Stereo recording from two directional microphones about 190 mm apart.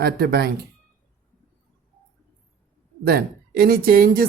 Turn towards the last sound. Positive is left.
turn(degrees=-50)  # may be behind; listen again after turning